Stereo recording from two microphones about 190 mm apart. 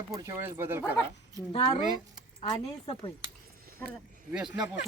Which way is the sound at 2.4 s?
30° left (ahead or behind).